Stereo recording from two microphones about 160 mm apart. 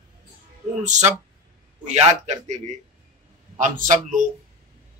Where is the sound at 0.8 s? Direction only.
50° right (ahead or behind).